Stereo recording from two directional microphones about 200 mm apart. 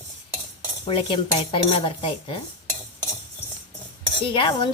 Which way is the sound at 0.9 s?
25° left (ahead or behind).